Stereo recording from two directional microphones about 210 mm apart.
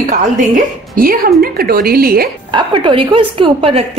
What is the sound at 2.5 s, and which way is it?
A woman's voice, 20° right (ahead or behind).